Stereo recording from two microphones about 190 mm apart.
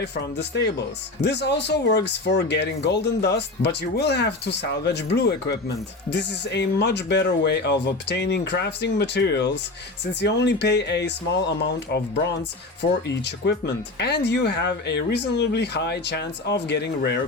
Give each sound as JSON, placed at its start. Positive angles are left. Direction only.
{"t": 0.0, "sound": "speech", "side_deg": 60}